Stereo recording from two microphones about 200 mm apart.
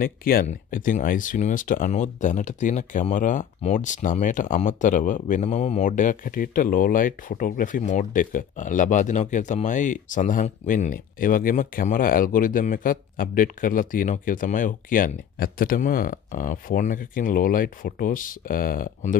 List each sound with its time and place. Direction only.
0.0 s speech: 45° left (ahead or behind)